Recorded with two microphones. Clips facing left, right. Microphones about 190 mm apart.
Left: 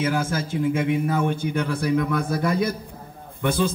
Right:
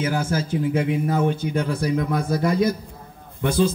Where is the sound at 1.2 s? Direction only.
55° left (ahead or behind).